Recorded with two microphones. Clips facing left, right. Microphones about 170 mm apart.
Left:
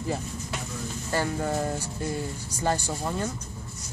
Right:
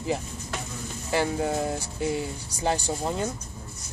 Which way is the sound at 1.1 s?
10° right (ahead or behind).